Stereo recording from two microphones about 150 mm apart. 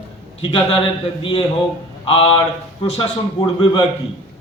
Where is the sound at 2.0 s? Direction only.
35° left (ahead or behind).